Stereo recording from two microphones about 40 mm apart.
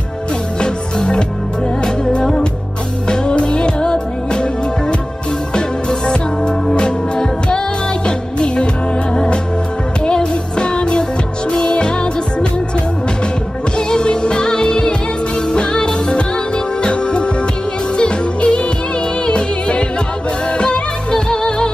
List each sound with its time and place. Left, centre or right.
0.6 s music: centre
3.1 s music: left
9.1 s music: centre
13.7 s music: left